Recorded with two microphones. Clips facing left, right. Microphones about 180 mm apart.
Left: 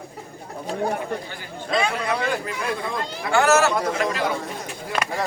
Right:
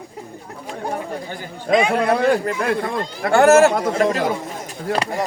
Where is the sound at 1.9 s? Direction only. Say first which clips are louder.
Right 8 dB; 55° right (ahead or behind).